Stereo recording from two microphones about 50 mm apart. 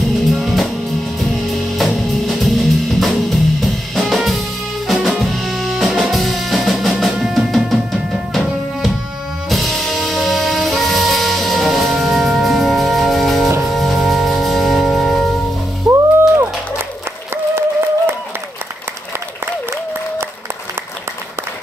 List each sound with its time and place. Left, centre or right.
0.3 s music: centre
1.8 s music: centre
17.6 s a sound: right